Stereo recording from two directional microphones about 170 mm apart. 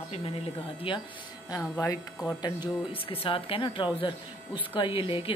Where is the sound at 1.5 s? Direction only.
15° left (ahead or behind).